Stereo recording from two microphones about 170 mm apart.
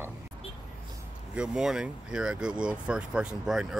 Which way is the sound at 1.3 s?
5° right (ahead or behind).